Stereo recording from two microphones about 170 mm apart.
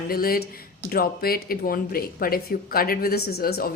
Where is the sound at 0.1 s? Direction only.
60° left (ahead or behind).